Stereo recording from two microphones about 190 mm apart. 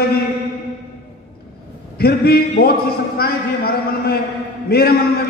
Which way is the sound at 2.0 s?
55° left (ahead or behind).